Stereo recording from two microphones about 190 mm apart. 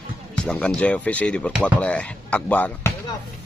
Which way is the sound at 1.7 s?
5° left (ahead or behind).